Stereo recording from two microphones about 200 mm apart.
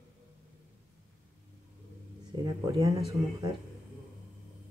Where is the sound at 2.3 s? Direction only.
15° right (ahead or behind).